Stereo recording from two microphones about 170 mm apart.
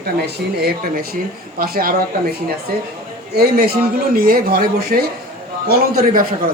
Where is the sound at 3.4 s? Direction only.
65° right (ahead or behind).